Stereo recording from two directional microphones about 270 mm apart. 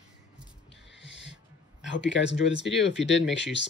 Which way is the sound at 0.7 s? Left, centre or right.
Left.